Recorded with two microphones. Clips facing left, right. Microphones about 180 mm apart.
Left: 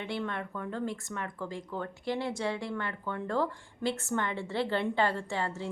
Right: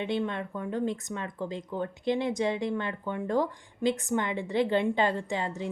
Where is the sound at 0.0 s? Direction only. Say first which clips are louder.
Right 5 dB; 20° right (ahead or behind).